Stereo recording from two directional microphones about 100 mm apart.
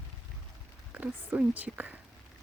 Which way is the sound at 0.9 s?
15° right (ahead or behind).